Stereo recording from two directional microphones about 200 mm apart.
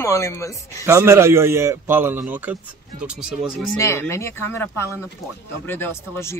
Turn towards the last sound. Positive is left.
turn(degrees=15)  # may be behind; listen again after turning